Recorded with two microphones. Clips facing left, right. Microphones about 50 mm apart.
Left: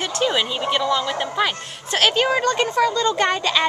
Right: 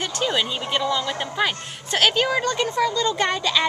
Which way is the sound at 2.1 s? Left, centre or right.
Left.